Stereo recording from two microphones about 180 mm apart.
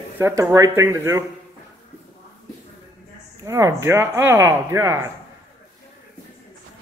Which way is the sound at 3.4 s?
15° right (ahead or behind).